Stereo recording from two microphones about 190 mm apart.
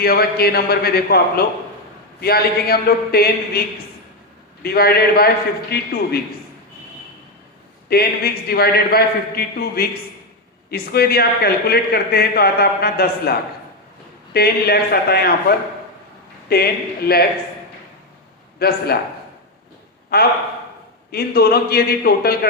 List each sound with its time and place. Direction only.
0.0 s a man's voice: 55° left (ahead or behind)
4.6 s a man's voice: 55° left (ahead or behind)
7.9 s a man's voice: 55° left (ahead or behind)
18.6 s a man's voice: 55° left (ahead or behind)
20.1 s a man's voice: 55° left (ahead or behind)